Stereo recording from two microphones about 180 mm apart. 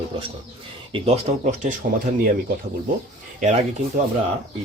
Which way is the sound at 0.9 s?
35° right (ahead or behind).